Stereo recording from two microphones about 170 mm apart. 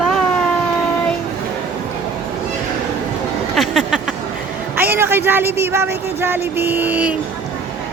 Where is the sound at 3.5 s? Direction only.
Centre (ahead or behind).